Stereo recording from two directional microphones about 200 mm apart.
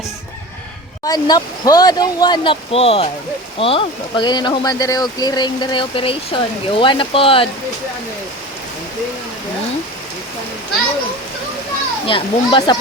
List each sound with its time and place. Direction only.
1.0 s speech: 20° left (ahead or behind)
12.0 s speech: 25° left (ahead or behind)